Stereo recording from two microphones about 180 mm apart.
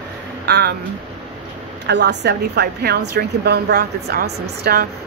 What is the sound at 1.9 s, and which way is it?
A woman's voice, 70° right (ahead or behind).